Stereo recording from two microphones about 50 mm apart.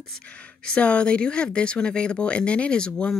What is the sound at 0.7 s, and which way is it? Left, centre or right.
Speech, left.